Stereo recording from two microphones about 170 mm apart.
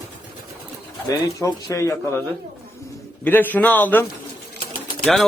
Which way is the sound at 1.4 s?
20° left (ahead or behind).